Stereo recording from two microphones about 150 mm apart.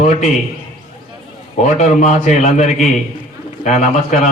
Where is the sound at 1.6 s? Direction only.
55° left (ahead or behind).